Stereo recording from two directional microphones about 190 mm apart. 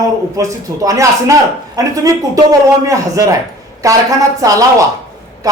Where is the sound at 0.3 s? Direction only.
15° right (ahead or behind).